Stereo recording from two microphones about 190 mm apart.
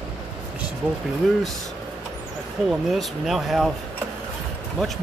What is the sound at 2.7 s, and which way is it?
Speech, centre (ahead or behind).